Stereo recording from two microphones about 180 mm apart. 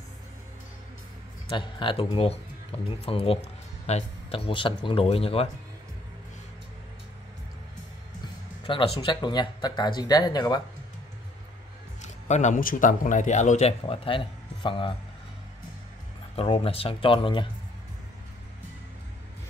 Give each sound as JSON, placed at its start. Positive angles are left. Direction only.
{"t": 1.5, "sound": "speech", "side_deg": 25}
{"t": 8.6, "sound": "speech", "side_deg": 30}
{"t": 12.3, "sound": "speech", "side_deg": 40}
{"t": 16.3, "sound": "speech", "side_deg": 30}